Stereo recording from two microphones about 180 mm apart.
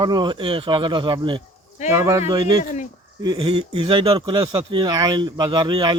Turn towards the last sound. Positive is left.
turn(degrees=-25)  # may be behind; listen again after turning